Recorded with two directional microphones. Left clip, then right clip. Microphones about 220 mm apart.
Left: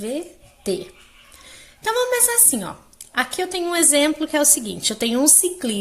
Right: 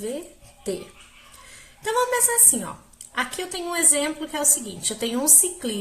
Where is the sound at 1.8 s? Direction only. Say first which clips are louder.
Left 2 dB; 40° left (ahead or behind).